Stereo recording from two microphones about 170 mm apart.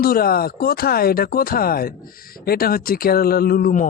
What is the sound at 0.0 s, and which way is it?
A man's voice, 60° left (ahead or behind).